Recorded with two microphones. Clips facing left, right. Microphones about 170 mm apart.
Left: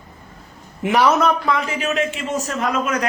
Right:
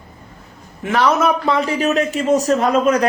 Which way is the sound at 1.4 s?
30° right (ahead or behind).